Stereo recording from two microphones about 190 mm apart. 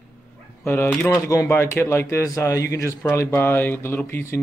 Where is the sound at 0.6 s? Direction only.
10° left (ahead or behind).